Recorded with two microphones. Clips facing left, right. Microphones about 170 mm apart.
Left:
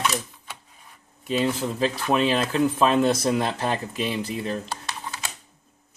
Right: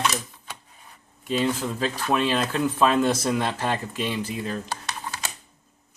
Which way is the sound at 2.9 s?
25° left (ahead or behind).